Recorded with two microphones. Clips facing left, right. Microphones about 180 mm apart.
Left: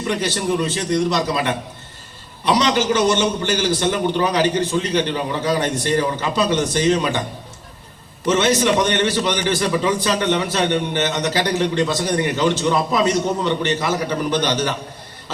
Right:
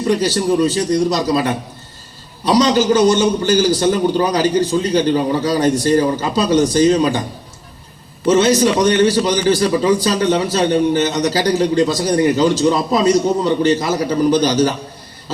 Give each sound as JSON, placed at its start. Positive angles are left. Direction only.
{"t": 0.1, "sound": "a man's voice", "side_deg": -40}
{"t": 8.3, "sound": "a man's voice", "side_deg": -35}